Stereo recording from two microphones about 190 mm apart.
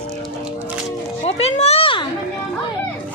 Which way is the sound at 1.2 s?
35° left (ahead or behind).